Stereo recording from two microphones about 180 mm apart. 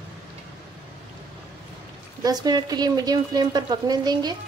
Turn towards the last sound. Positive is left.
turn(degrees=-20)  # may be behind; listen again after turning